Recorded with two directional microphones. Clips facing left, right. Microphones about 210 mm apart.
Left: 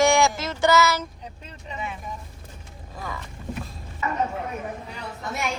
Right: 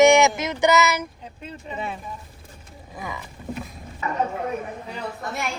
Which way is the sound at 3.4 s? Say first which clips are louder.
Right 2 dB; 10° right (ahead or behind).